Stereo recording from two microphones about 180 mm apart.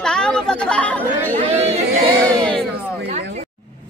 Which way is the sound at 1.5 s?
35° right (ahead or behind).